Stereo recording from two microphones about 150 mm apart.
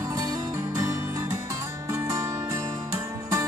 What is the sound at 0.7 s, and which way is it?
Music, 20° right (ahead or behind).